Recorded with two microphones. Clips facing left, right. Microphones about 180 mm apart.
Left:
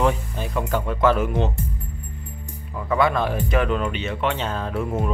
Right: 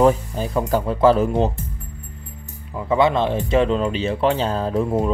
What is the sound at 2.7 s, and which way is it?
Speech, 20° right (ahead or behind).